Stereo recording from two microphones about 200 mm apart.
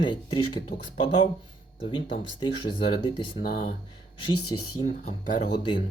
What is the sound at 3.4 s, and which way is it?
Speech, 45° left (ahead or behind).